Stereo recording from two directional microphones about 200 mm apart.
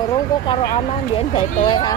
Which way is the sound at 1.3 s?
25° left (ahead or behind).